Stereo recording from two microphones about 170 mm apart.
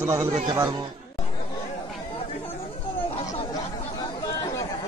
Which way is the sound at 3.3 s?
20° left (ahead or behind).